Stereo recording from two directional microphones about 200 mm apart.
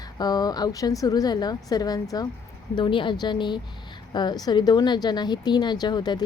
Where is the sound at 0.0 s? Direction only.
20° left (ahead or behind).